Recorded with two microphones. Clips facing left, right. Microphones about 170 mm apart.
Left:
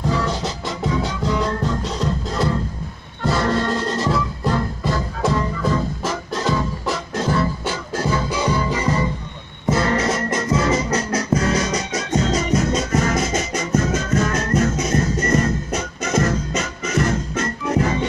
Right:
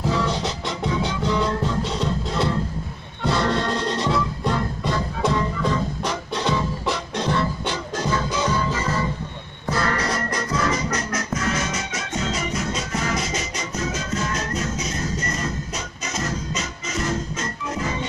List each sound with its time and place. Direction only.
0.0 s music: centre (ahead or behind); by 17.0 s 55° left (ahead or behind)